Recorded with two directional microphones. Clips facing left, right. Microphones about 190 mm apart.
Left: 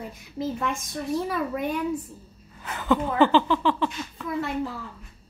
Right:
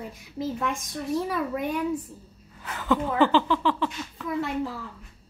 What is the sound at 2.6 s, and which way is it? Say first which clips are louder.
Speech: left 2 dB; 20° left (ahead or behind).